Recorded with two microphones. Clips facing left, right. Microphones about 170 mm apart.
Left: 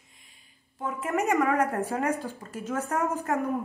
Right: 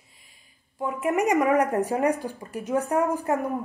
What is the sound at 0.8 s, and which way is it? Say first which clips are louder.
Speech: right 4 dB; 15° right (ahead or behind).